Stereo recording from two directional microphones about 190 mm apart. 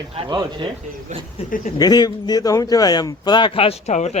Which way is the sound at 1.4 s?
30° left (ahead or behind).